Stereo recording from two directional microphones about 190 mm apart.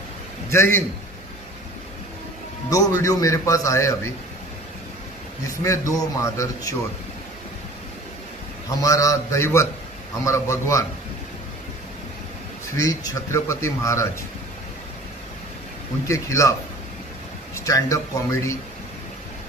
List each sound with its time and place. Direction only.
0.5 s a man's voice: 15° left (ahead or behind)
2.7 s a man's voice: 15° left (ahead or behind)
5.6 s a man's voice: 15° left (ahead or behind)
8.6 s a man's voice: 15° left (ahead or behind)
12.7 s a man's voice: 15° left (ahead or behind)
16.1 s a man's voice: 15° left (ahead or behind)
17.6 s a man's voice: 15° left (ahead or behind)